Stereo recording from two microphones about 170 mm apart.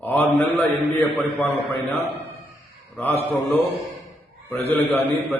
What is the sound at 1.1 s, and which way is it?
Speech, centre (ahead or behind).